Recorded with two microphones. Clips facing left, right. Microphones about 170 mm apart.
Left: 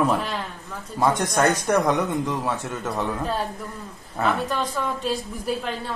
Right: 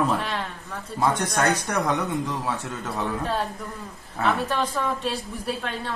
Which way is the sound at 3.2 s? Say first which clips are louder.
Even; centre (ahead or behind).